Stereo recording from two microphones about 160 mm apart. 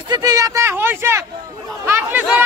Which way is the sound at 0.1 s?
20° right (ahead or behind).